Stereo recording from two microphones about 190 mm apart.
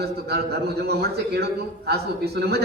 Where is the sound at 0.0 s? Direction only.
60° right (ahead or behind).